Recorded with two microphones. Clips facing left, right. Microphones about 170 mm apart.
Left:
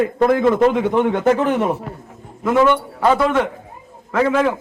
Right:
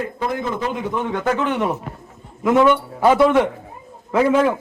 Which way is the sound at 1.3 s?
35° left (ahead or behind).